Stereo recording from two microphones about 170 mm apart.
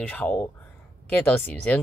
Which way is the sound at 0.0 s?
10° left (ahead or behind).